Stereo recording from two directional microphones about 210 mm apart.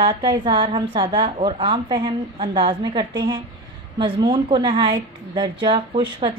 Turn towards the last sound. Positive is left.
turn(degrees=-25)  # may be behind; listen again after turning